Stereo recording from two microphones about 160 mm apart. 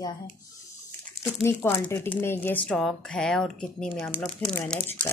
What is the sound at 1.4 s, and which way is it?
Speech, 15° left (ahead or behind).